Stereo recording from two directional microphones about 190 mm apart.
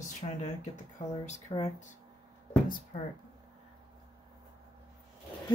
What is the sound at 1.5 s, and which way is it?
Speech, 35° left (ahead or behind).